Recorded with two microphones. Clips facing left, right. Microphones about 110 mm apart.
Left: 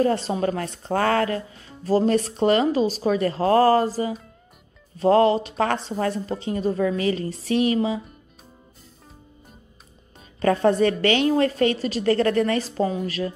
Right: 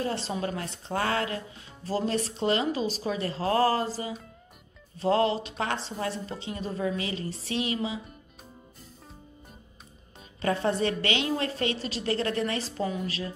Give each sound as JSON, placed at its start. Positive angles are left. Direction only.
{"t": 0.0, "sound": "a woman's voice", "side_deg": 45}
{"t": 10.4, "sound": "a woman's voice", "side_deg": 45}